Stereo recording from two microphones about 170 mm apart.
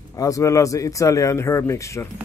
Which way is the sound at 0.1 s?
20° left (ahead or behind).